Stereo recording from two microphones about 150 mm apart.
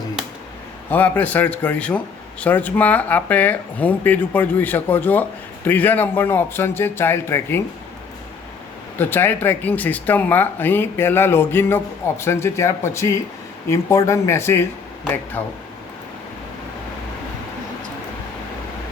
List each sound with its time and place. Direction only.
0.9 s speech: 10° left (ahead or behind)
9.0 s speech: 15° left (ahead or behind)